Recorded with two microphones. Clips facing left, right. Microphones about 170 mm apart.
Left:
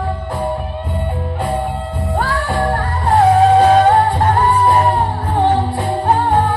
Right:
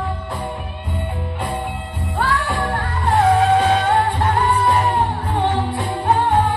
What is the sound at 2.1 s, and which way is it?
Music, 40° left (ahead or behind).